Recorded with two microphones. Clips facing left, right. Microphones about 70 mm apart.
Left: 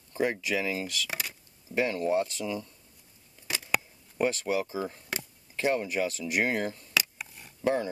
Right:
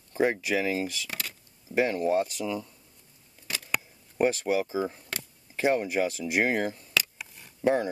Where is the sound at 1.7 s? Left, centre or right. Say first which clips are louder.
Right 3 dB; right.